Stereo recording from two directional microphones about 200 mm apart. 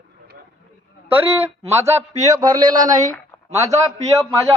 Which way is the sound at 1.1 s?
10° right (ahead or behind).